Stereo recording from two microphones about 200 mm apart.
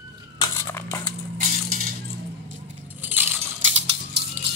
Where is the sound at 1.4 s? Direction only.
40° right (ahead or behind).